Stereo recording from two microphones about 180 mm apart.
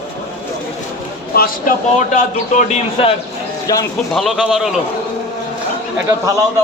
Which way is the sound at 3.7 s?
20° left (ahead or behind).